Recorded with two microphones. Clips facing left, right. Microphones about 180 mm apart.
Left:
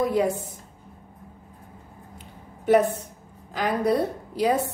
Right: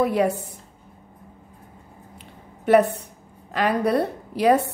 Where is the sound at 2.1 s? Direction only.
65° right (ahead or behind).